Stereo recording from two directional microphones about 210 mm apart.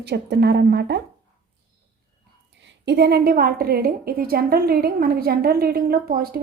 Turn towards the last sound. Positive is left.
turn(degrees=-45)  # may be behind; listen again after turning